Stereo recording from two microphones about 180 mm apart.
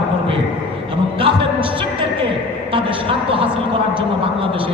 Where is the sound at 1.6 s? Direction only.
30° right (ahead or behind).